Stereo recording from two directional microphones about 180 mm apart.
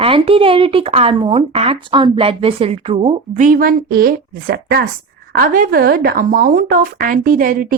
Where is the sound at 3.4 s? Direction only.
50° right (ahead or behind).